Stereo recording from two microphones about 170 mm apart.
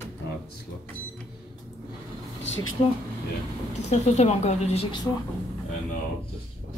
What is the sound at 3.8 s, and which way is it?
A woman's voice, 40° left (ahead or behind).